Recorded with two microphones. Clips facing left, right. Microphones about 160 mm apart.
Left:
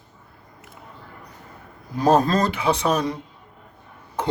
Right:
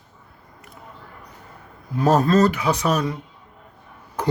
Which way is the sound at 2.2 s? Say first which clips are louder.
Right 3 dB; 30° left (ahead or behind).